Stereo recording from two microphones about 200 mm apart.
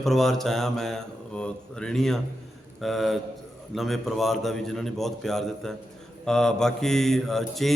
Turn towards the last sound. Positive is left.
turn(degrees=0)  # may be behind; listen again after turning